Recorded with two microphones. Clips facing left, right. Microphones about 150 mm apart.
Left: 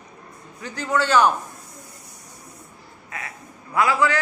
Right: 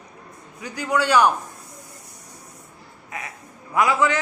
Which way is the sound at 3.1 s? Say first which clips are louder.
Right 1 dB; 20° right (ahead or behind).